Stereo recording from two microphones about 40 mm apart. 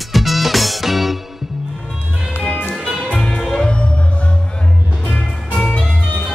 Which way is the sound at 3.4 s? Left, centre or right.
Centre.